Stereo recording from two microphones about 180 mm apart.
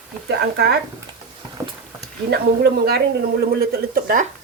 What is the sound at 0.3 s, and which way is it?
Speech, 65° right (ahead or behind).